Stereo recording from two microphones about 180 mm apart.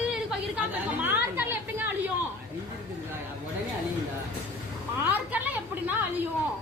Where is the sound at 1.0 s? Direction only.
10° right (ahead or behind).